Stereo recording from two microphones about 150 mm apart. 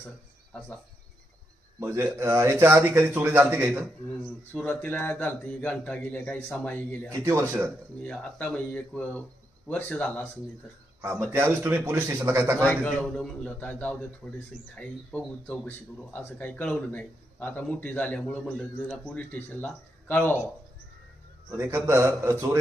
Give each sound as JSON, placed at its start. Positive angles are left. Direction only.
{"t": 0.5, "sound": "speech", "side_deg": 5}
{"t": 1.8, "sound": "a man's voice", "side_deg": -15}
{"t": 4.5, "sound": "speech", "side_deg": 10}
{"t": 7.1, "sound": "a man's voice", "side_deg": -20}
{"t": 8.0, "sound": "speech", "side_deg": 10}
{"t": 11.2, "sound": "a man's voice", "side_deg": -15}
{"t": 12.6, "sound": "speech", "side_deg": 10}
{"t": 14.2, "sound": "speech", "side_deg": 0}
{"t": 14.8, "sound": "speech", "side_deg": 10}
{"t": 21.5, "sound": "a man's voice", "side_deg": -15}